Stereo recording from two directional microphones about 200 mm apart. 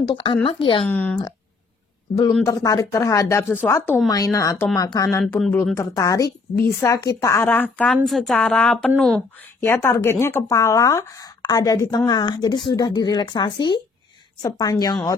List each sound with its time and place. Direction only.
0.0 s speech: 25° left (ahead or behind)
0.8 s speech: 10° left (ahead or behind)
2.4 s speech: 15° left (ahead or behind)
5.2 s speech: centre (ahead or behind)
5.8 s speech: 15° left (ahead or behind)
9.7 s speech: 15° left (ahead or behind)